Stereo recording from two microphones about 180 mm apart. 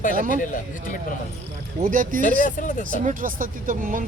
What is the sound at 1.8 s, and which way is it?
Speech, 45° right (ahead or behind).